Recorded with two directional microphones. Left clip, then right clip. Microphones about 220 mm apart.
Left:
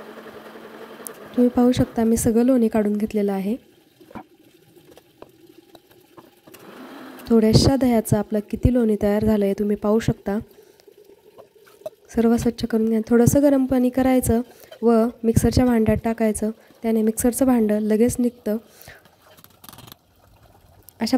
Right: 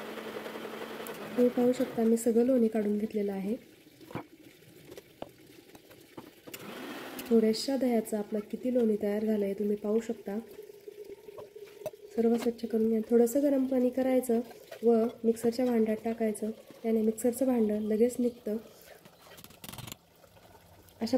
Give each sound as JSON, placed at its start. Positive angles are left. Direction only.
{"t": 1.7, "sound": "speech", "side_deg": 40}
{"t": 7.3, "sound": "speech", "side_deg": 40}
{"t": 12.2, "sound": "speech", "side_deg": 45}